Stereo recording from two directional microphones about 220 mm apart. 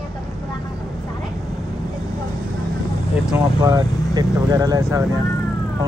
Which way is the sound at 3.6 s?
15° right (ahead or behind).